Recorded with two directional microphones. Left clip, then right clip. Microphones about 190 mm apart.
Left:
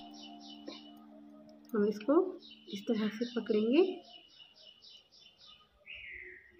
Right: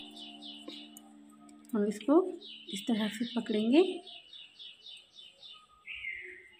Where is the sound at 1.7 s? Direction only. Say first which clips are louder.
Right 1 dB; 40° right (ahead or behind).